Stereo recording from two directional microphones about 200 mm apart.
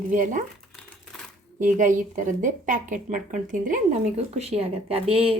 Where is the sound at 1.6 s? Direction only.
40° right (ahead or behind).